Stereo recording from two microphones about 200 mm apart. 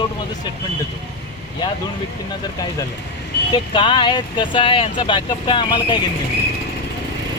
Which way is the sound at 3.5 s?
25° left (ahead or behind).